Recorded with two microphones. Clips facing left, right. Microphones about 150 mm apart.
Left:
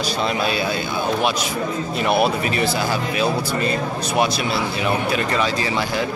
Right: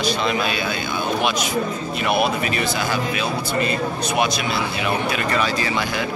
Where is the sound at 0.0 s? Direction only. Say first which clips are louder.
Even; 35° left (ahead or behind).